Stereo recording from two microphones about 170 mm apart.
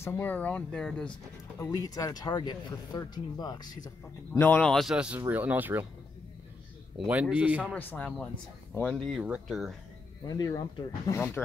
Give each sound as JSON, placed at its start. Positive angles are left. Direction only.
{"t": 0.0, "sound": "speech", "side_deg": 15}
{"t": 1.6, "sound": "speech", "side_deg": 20}
{"t": 4.3, "sound": "a man's voice", "side_deg": 10}
{"t": 7.1, "sound": "a man's voice", "side_deg": -5}
{"t": 7.7, "sound": "speech", "side_deg": 10}
{"t": 10.2, "sound": "speech", "side_deg": 20}